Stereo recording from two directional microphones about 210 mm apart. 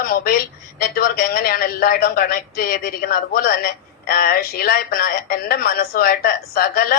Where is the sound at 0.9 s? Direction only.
45° left (ahead or behind).